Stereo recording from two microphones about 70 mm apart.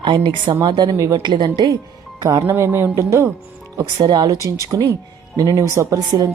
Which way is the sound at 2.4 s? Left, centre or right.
Right.